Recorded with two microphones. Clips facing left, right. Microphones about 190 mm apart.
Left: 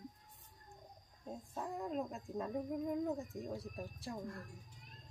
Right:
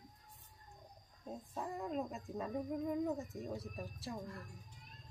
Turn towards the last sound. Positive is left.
turn(degrees=0)  # may be behind; listen again after turning